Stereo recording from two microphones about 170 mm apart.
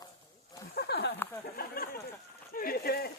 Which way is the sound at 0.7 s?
70° left (ahead or behind).